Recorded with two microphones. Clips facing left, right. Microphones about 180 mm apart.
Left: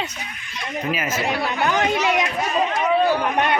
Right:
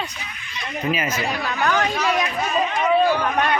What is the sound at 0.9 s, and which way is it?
Speech, 5° left (ahead or behind).